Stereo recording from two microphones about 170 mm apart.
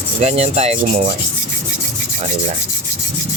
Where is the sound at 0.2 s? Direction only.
40° right (ahead or behind).